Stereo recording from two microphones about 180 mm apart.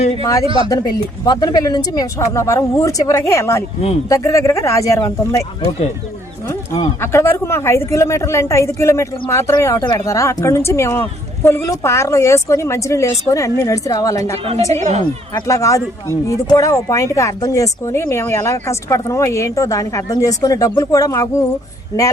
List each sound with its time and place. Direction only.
0.4 s speech: 30° right (ahead or behind)
0.7 s a man's voice: 20° left (ahead or behind)
7.0 s a man's voice: 15° left (ahead or behind)
14.7 s speech: 40° right (ahead or behind)
15.3 s a man's voice: 15° left (ahead or behind)